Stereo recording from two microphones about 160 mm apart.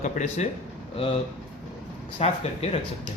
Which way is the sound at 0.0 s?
50° left (ahead or behind).